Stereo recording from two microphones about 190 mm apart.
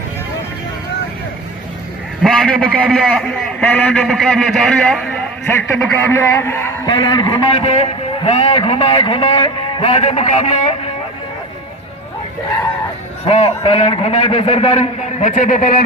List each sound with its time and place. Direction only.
2.2 s a man's voice: 5° left (ahead or behind)
5.5 s a man's voice: 15° left (ahead or behind); by 10.8 s 35° left (ahead or behind)
13.2 s a man's voice: 30° left (ahead or behind)